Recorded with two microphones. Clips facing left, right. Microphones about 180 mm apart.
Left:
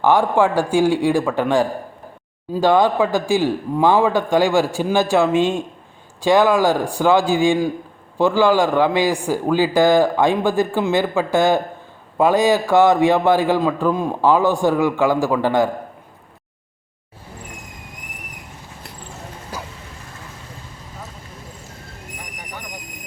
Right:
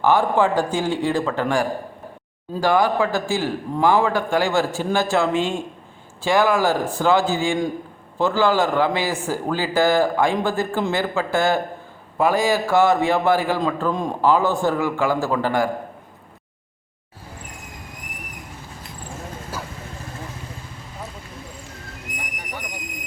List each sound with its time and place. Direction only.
0.0 s a man's voice: 15° left (ahead or behind)